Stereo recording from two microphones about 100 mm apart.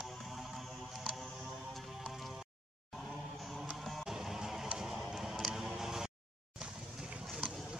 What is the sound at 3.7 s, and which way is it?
Music, centre (ahead or behind).